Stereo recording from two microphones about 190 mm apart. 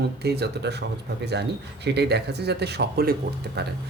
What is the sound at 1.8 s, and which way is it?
Speech, 60° right (ahead or behind).